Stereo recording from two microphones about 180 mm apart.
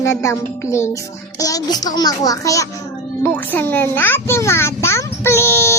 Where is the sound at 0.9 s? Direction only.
20° left (ahead or behind).